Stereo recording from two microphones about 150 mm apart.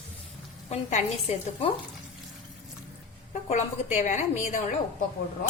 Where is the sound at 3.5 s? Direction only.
55° left (ahead or behind).